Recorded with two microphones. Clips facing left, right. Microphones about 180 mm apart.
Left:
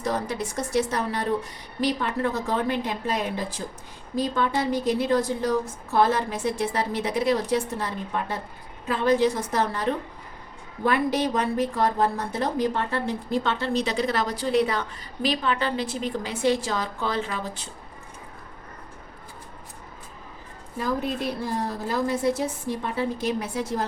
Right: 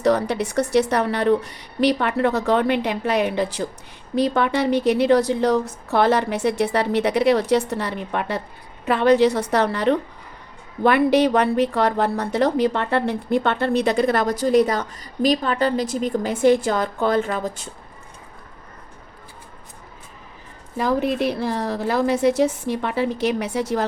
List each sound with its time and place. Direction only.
0.0 s a woman's voice: 70° right (ahead or behind); by 17.5 s 45° right (ahead or behind)
20.7 s a woman's voice: 80° right